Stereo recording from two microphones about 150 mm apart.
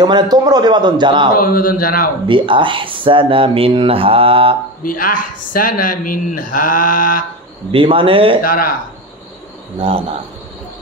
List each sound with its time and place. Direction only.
0.0 s a man's voice: 25° right (ahead or behind)
1.4 s speech: 70° left (ahead or behind)
2.2 s speech: 35° right (ahead or behind)
4.8 s speech: 65° left (ahead or behind)
7.7 s speech: 35° right (ahead or behind)
8.5 s speech: 70° left (ahead or behind)
9.8 s speech: 40° right (ahead or behind)